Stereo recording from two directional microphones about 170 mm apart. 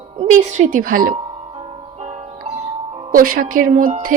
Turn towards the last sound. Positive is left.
turn(degrees=-55)  # may be behind; listen again after turning